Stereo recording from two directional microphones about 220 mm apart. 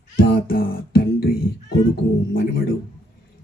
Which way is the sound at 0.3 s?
40° left (ahead or behind).